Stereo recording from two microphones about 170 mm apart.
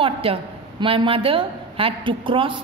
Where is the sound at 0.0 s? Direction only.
30° right (ahead or behind).